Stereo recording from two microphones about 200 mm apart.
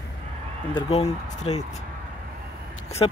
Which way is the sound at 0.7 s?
30° left (ahead or behind).